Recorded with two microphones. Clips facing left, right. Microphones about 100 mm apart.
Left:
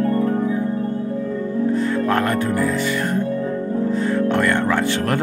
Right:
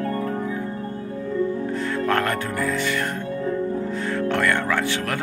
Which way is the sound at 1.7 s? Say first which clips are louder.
Left 4 dB; 15° left (ahead or behind).